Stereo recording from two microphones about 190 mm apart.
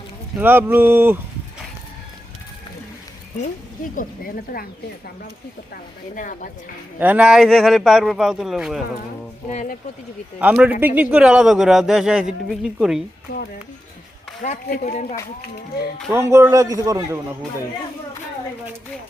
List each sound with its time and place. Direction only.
0.3 s a man's voice: 10° right (ahead or behind)
3.9 s a woman's voice: 50° left (ahead or behind)
5.7 s a woman's voice: 45° left (ahead or behind)
7.0 s speech: 5° right (ahead or behind)
9.5 s speech: 40° left (ahead or behind)
10.4 s speech: 10° right (ahead or behind)
13.3 s speech: 55° left (ahead or behind)
14.4 s speech: 40° left (ahead or behind)
16.1 s a man's voice: 15° right (ahead or behind)